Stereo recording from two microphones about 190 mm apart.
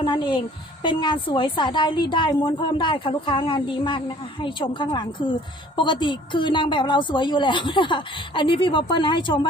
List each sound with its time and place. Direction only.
0.0 s a woman's voice: 25° left (ahead or behind)